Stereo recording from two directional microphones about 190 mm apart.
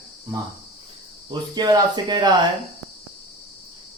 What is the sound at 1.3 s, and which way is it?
Speech, 20° right (ahead or behind).